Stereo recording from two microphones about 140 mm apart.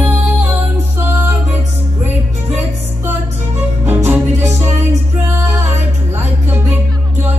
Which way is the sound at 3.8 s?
15° right (ahead or behind).